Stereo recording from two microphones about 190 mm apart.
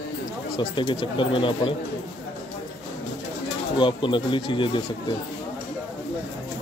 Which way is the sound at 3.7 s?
25° left (ahead or behind).